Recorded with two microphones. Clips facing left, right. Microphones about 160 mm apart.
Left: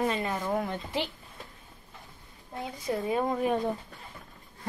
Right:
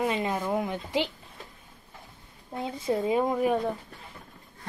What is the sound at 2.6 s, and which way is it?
Child singing, 30° right (ahead or behind).